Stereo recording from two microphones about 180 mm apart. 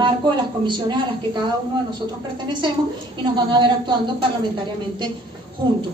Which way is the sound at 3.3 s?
25° right (ahead or behind).